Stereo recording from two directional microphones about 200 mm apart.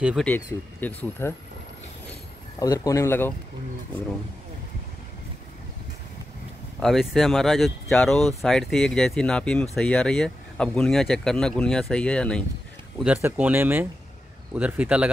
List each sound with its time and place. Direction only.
0.0 s speech: centre (ahead or behind)
0.3 s speech: 10° left (ahead or behind)
2.6 s speech: 15° left (ahead or behind)
6.8 s speech: centre (ahead or behind)
13.0 s speech: 5° right (ahead or behind)